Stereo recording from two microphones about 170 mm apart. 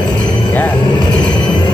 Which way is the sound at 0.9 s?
25° left (ahead or behind).